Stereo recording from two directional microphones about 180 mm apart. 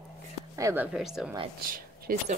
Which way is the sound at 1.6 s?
50° right (ahead or behind).